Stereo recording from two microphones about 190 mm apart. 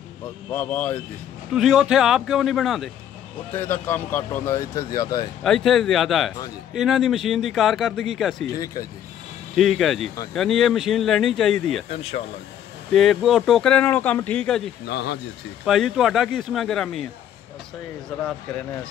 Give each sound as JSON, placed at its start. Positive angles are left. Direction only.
{"t": 0.5, "sound": "speech", "side_deg": 10}
{"t": 1.5, "sound": "speech", "side_deg": 0}
{"t": 3.5, "sound": "speech", "side_deg": 10}
{"t": 5.4, "sound": "speech", "side_deg": 0}
{"t": 9.6, "sound": "speech", "side_deg": 0}
{"t": 11.9, "sound": "speech", "side_deg": 30}
{"t": 12.9, "sound": "speech", "side_deg": 0}
{"t": 14.9, "sound": "speech", "side_deg": 60}
{"t": 15.6, "sound": "speech", "side_deg": 0}